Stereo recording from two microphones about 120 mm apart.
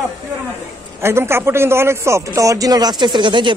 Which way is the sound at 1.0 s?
20° right (ahead or behind).